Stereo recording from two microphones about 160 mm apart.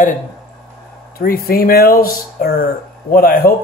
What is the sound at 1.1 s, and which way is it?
Speech, 65° left (ahead or behind).